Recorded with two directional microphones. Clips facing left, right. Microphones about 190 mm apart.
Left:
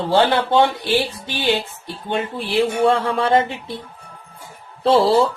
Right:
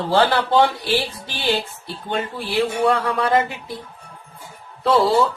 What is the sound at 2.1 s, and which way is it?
Speech, 25° left (ahead or behind).